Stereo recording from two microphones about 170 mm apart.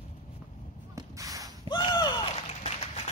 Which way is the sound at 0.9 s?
20° right (ahead or behind).